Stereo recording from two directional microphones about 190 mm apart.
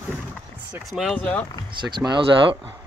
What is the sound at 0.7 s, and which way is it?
Speech, centre (ahead or behind).